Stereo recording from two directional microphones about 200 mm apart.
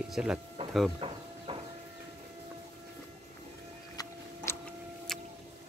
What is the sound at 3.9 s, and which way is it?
Biting, 15° left (ahead or behind).